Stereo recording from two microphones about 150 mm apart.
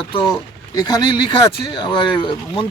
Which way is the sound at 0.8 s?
25° left (ahead or behind).